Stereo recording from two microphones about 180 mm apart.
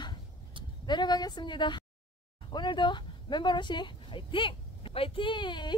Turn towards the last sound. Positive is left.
turn(degrees=25)  # may be behind; listen again after turning